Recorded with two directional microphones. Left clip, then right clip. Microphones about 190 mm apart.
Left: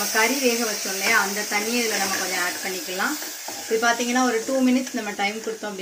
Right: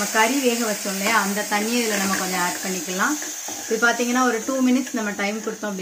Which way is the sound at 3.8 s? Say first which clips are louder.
Right 3 dB; 45° right (ahead or behind).